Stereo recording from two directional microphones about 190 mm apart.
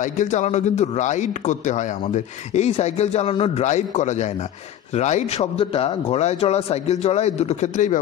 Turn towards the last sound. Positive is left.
turn(degrees=40)  # may be behind; listen again after turning